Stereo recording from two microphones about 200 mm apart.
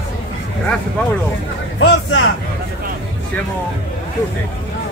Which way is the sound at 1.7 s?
70° left (ahead or behind).